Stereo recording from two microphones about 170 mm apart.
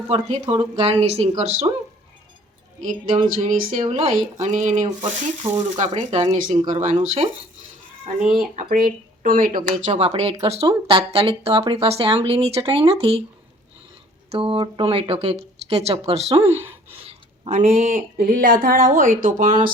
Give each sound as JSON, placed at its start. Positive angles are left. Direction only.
{"t": 0.1, "sound": "speech", "side_deg": -35}
{"t": 3.3, "sound": "speech", "side_deg": -50}
{"t": 3.8, "sound": "speech", "side_deg": -35}
{"t": 4.1, "sound": "speech", "side_deg": -45}
{"t": 8.4, "sound": "speech", "side_deg": -55}
{"t": 9.9, "sound": "speech", "side_deg": -35}
{"t": 14.3, "sound": "speech", "side_deg": -30}
{"t": 16.5, "sound": "speech", "side_deg": -10}
{"t": 17.0, "sound": "speech", "side_deg": -40}